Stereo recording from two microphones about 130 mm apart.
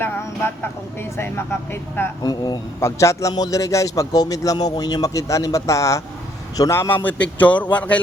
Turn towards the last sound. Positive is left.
turn(degrees=10)  # may be behind; listen again after turning